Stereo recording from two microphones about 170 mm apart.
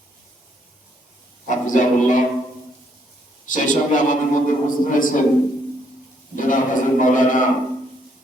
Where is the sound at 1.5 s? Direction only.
50° left (ahead or behind).